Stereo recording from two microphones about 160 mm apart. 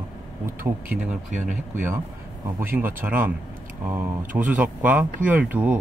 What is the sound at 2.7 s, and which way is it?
Speech, 10° right (ahead or behind).